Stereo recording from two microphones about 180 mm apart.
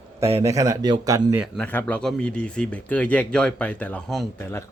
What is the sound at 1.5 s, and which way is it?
Speech, 10° left (ahead or behind).